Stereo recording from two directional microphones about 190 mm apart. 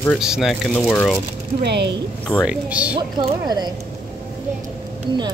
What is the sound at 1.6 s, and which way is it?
Speech, 65° right (ahead or behind).